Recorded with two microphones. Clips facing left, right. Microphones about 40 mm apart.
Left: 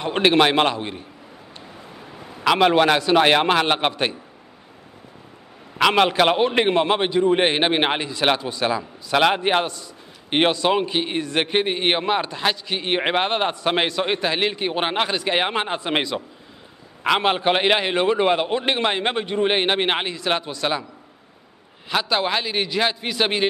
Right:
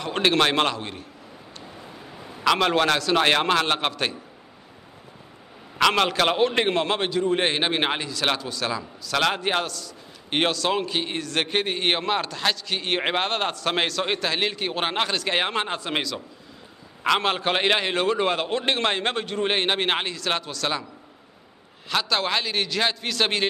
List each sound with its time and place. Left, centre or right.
0.0 s a man's voice: left
5.8 s a man's voice: centre
17.0 s a man's voice: centre
21.8 s a man's voice: centre